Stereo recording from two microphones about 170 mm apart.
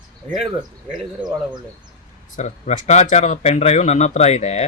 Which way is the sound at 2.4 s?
45° left (ahead or behind).